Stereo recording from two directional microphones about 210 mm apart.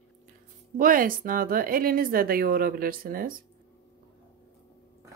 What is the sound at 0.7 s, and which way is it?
Speech, 40° right (ahead or behind).